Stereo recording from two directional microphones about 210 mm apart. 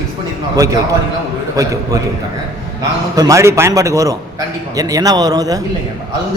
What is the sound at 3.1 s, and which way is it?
A man's voice, 15° right (ahead or behind).